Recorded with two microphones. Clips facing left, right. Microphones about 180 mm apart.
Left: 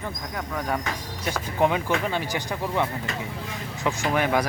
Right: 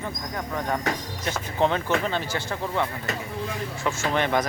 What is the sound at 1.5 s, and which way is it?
Speech, 10° left (ahead or behind).